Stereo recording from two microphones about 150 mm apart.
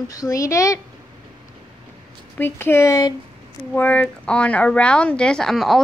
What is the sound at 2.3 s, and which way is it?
Speech, 15° left (ahead or behind).